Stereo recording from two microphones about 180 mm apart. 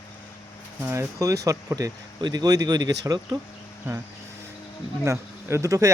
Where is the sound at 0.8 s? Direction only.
15° right (ahead or behind).